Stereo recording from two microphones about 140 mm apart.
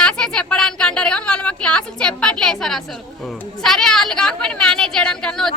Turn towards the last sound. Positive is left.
turn(degrees=5)  # may be behind; listen again after turning